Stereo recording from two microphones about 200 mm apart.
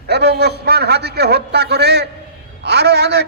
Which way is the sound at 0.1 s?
55° right (ahead or behind).